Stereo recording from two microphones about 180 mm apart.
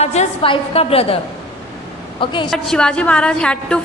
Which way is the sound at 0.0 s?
40° left (ahead or behind).